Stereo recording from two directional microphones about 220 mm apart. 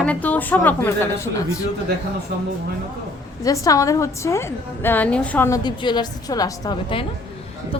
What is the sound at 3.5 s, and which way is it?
A woman's voice, 15° left (ahead or behind).